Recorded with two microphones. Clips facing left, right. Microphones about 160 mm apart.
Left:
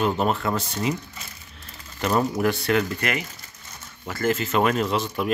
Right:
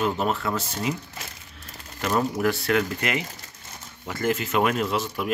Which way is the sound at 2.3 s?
Centre (ahead or behind).